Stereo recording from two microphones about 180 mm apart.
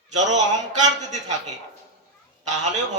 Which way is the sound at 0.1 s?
40° right (ahead or behind).